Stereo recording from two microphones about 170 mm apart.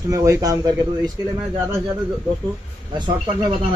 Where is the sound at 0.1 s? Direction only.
20° right (ahead or behind).